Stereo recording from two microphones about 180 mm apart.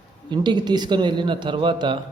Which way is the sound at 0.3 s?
25° right (ahead or behind).